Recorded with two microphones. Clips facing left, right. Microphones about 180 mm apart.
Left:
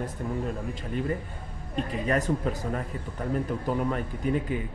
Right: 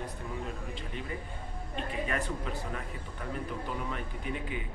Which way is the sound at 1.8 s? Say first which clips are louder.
Left 7 dB; 40° left (ahead or behind).